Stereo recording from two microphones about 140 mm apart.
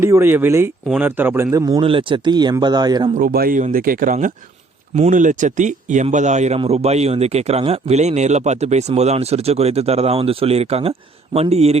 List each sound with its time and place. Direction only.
0.0 s a man's voice: 20° right (ahead or behind)
1.8 s speech: 40° right (ahead or behind)
3.2 s speech: 90° right; by 11.8 s 50° right (ahead or behind)